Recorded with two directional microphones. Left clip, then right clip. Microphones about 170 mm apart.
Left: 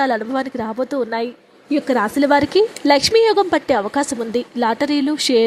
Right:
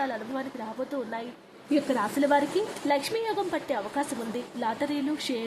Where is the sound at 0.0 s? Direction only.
40° left (ahead or behind).